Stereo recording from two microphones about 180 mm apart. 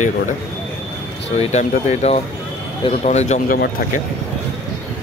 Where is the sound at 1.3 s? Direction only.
40° left (ahead or behind).